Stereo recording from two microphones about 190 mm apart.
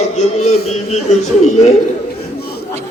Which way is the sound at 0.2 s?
35° left (ahead or behind).